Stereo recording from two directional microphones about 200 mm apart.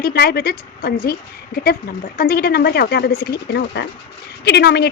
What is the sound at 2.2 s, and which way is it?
A woman's voice, 50° left (ahead or behind).